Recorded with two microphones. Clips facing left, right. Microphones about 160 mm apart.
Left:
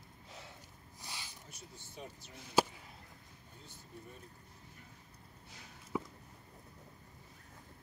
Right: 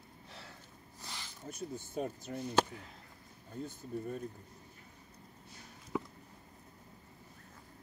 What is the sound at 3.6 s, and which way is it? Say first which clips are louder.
Speech: right 14 dB; 50° right (ahead or behind).